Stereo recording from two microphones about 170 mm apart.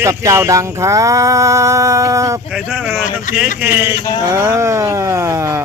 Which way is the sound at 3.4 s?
10° right (ahead or behind).